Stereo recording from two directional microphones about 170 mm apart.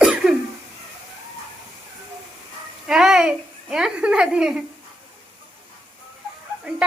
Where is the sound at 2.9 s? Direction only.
5° right (ahead or behind).